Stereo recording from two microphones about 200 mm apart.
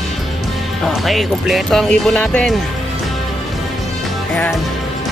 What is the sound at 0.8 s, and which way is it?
Speech, centre (ahead or behind).